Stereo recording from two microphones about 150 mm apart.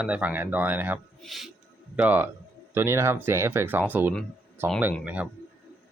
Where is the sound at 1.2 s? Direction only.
Centre (ahead or behind).